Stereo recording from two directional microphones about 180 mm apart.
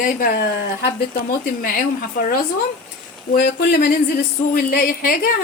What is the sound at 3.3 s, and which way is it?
Speech, 65° left (ahead or behind).